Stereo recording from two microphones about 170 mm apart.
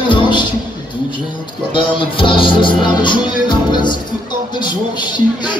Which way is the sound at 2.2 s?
30° left (ahead or behind).